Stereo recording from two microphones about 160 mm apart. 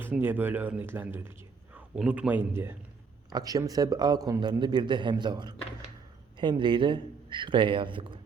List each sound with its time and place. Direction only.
0.0 s a man's voice: 15° right (ahead or behind); by 8.2 s 30° right (ahead or behind)